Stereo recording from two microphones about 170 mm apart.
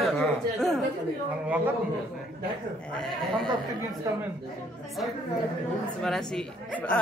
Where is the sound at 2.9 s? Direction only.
5° left (ahead or behind).